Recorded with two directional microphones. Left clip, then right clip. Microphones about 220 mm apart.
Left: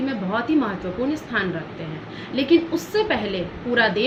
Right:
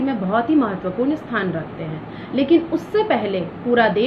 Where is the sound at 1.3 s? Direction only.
20° left (ahead or behind).